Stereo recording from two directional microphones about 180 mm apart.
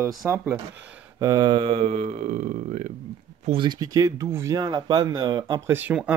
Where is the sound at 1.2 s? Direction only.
20° right (ahead or behind); by 2.9 s 45° right (ahead or behind).